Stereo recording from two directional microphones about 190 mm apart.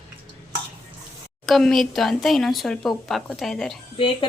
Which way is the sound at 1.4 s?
Centre (ahead or behind).